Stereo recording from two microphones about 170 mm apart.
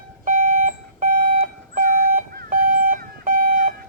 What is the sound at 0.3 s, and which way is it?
Alarm clock, 50° right (ahead or behind).